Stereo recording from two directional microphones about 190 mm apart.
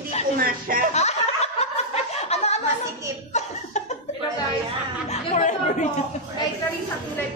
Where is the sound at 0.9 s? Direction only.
35° left (ahead or behind).